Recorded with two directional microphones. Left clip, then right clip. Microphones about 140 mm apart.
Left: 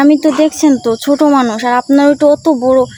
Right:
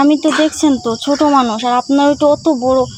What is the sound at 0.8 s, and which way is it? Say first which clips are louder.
Cricket: left 3 dB; 35° left (ahead or behind).